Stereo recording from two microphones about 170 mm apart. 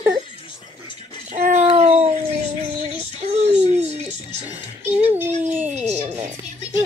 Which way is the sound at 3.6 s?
40° right (ahead or behind).